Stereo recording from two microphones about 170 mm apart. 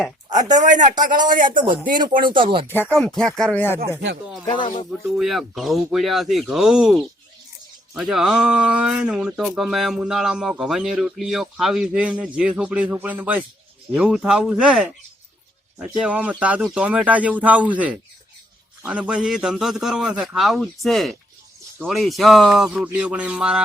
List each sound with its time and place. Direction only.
0.6 s speech: 45° right (ahead or behind)
1.5 s speech: 30° right (ahead or behind)
2.9 s speech: 5° left (ahead or behind)
4.4 s speech: 30° left (ahead or behind)
4.9 s speech: centre (ahead or behind)
7.9 s a man's voice: 5° right (ahead or behind)